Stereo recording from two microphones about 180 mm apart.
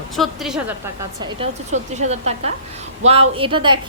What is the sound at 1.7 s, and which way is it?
A woman's voice, 40° right (ahead or behind).